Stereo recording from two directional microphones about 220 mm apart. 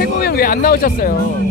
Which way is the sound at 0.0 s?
45° left (ahead or behind).